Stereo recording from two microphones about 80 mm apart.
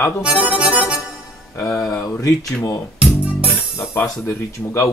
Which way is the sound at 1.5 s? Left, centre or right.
Left.